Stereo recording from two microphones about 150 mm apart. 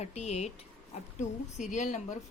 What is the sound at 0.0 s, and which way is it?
A woman's voice, 45° left (ahead or behind).